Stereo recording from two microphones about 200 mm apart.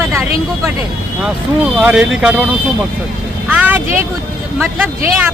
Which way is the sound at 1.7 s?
5° right (ahead or behind).